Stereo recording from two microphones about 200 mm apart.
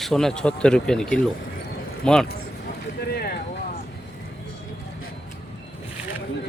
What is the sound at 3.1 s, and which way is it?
Boat, 50° left (ahead or behind).